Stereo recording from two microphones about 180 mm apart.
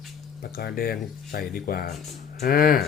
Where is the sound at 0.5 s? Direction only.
55° left (ahead or behind).